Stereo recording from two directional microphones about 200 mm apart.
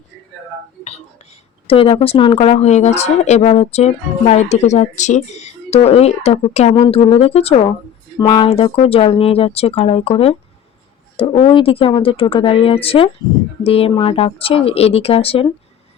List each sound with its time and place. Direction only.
1.6 s speech: 30° left (ahead or behind)